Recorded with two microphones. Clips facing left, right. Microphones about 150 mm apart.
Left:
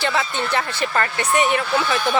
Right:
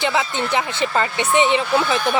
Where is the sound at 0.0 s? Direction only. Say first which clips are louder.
Right 2 dB; 15° right (ahead or behind).